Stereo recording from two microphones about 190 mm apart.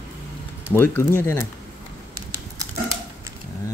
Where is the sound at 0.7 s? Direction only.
10° left (ahead or behind).